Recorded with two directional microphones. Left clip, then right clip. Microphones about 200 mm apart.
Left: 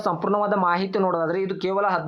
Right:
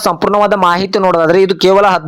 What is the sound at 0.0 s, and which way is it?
Speech, 35° right (ahead or behind).